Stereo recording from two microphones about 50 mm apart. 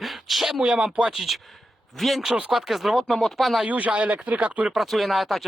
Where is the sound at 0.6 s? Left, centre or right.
Centre.